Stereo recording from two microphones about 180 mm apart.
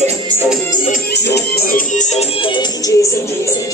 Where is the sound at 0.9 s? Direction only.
65° left (ahead or behind); by 2.9 s 25° left (ahead or behind).